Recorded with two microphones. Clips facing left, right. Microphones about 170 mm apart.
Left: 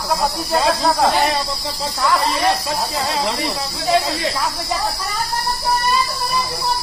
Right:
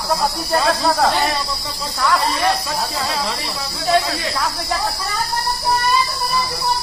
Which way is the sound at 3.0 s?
25° left (ahead or behind).